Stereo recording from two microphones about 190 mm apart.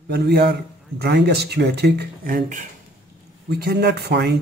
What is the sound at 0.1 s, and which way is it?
A man's voice, 60° right (ahead or behind).